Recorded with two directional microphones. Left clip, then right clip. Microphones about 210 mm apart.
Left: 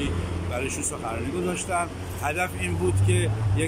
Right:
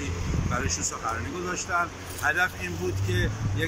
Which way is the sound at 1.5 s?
20° left (ahead or behind).